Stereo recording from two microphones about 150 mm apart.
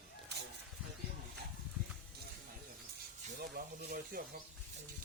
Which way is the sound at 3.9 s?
75° right (ahead or behind).